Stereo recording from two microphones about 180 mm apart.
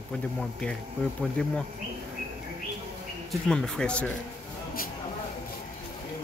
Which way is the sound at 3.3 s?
5° left (ahead or behind).